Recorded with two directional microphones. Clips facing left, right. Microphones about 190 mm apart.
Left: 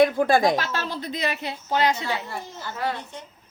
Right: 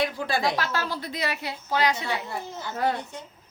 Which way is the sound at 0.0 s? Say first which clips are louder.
Left 8 dB; 50° left (ahead or behind).